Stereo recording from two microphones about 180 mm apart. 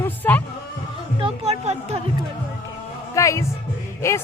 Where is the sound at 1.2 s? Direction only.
30° right (ahead or behind).